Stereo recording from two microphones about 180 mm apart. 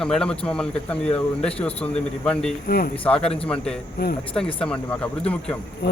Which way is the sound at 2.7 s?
60° left (ahead or behind).